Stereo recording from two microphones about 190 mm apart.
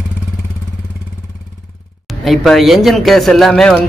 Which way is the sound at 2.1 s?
Centre (ahead or behind).